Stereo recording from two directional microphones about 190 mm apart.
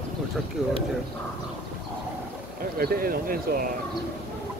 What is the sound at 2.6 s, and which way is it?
Speech, 50° right (ahead or behind).